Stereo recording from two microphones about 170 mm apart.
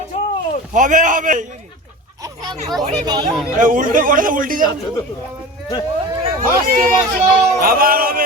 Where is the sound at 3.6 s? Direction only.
50° right (ahead or behind).